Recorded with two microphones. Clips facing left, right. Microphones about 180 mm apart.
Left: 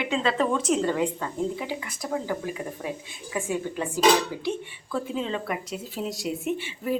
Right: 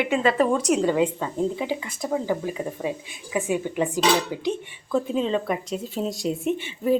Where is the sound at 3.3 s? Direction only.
15° right (ahead or behind).